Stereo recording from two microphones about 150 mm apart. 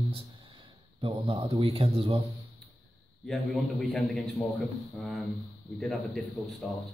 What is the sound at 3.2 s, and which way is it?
A man's voice, centre (ahead or behind).